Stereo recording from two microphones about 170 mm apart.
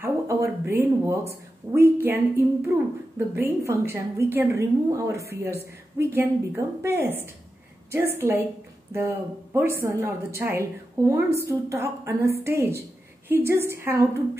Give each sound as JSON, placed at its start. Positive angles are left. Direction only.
{"t": 0.0, "sound": "a woman's voice", "side_deg": -15}